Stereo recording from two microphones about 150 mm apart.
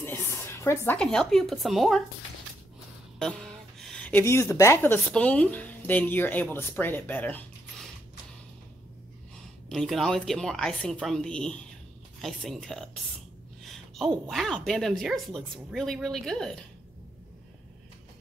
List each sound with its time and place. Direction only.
0.0 s a sound: 15° left (ahead or behind)
0.9 s a woman's voice: 5° left (ahead or behind)
3.2 s speech: 5° left (ahead or behind)
9.7 s a woman's voice: centre (ahead or behind)